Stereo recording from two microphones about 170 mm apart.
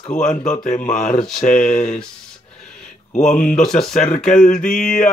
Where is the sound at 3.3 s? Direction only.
50° left (ahead or behind).